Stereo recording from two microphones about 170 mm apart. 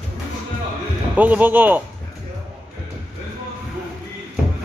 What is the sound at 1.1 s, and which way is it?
Speech, 10° right (ahead or behind).